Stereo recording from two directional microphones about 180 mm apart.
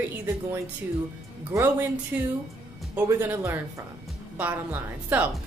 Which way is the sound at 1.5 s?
15° right (ahead or behind).